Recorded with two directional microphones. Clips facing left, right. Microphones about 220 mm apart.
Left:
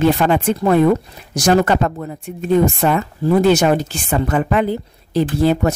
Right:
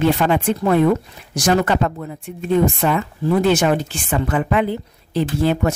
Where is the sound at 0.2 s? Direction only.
40° left (ahead or behind).